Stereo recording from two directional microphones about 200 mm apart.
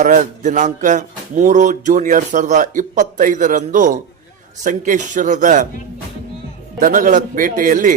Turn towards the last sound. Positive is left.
turn(degrees=-40)  # may be behind; listen again after turning